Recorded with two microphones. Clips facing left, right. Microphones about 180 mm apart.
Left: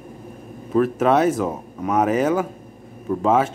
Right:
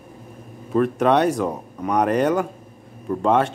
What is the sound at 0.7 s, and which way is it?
Speech, centre (ahead or behind).